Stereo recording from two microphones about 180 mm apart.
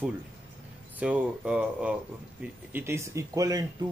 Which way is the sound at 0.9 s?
5° right (ahead or behind).